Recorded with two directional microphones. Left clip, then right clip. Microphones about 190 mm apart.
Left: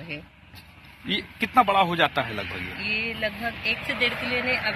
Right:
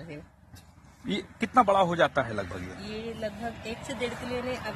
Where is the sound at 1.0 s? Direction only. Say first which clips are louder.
Left 6 dB; 50° right (ahead or behind).